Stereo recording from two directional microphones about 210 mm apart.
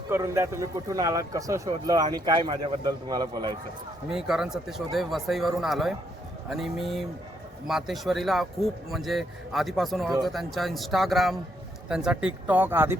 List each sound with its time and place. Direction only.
0.1 s speech: 15° right (ahead or behind)
4.1 s a man's voice: 5° right (ahead or behind)